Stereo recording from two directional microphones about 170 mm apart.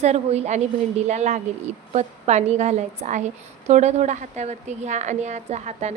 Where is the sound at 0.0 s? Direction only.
40° right (ahead or behind).